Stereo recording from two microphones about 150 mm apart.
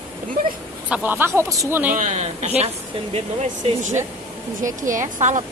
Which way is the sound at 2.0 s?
50° right (ahead or behind).